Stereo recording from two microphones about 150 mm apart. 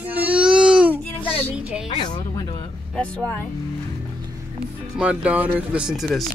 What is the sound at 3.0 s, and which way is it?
Speech, 10° left (ahead or behind).